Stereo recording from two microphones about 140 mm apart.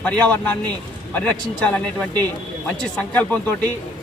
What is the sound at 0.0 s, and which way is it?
Speech, 10° left (ahead or behind).